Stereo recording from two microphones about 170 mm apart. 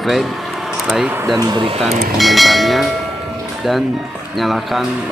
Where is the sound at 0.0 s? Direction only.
Centre (ahead or behind).